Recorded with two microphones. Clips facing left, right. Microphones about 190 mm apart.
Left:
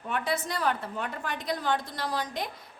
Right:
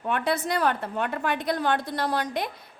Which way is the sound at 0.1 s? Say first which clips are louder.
Right 5 dB; 60° right (ahead or behind).